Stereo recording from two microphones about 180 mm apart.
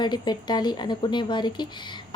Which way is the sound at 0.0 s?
25° left (ahead or behind).